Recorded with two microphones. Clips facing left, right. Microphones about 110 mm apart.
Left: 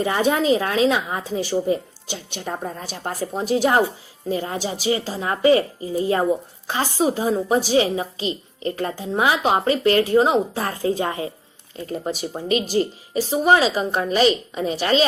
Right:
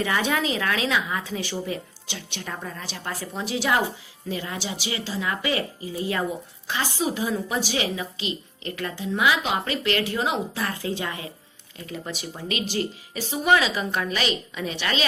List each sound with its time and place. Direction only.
0.0 s a woman's voice: 40° left (ahead or behind)